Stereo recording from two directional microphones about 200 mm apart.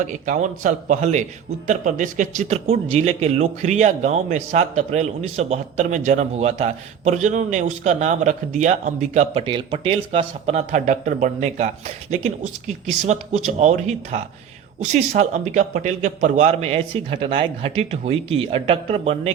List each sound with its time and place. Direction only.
0.0 s speech: 40° right (ahead or behind)